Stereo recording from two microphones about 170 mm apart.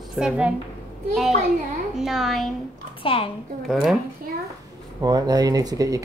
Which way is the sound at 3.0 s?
30° left (ahead or behind).